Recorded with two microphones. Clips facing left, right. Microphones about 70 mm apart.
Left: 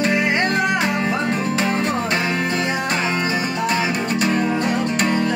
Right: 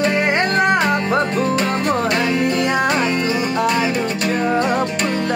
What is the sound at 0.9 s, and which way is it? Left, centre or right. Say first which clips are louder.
Music: right 3 dB; centre.